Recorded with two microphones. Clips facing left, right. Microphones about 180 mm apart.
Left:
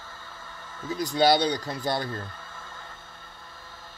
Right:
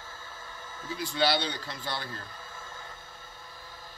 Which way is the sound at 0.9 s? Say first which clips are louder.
Left 6 dB; 45° left (ahead or behind).